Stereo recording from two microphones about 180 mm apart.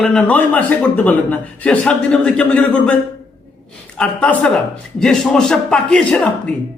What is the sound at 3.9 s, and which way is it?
A man's voice, 5° left (ahead or behind).